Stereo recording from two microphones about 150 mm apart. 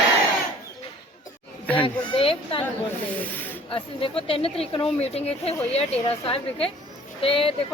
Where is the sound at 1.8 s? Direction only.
35° left (ahead or behind).